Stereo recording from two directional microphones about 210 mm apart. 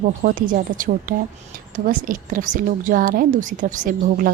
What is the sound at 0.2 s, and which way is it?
A woman's voice, 40° right (ahead or behind).